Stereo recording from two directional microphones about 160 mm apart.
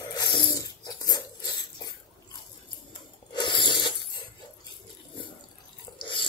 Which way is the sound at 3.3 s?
30° left (ahead or behind).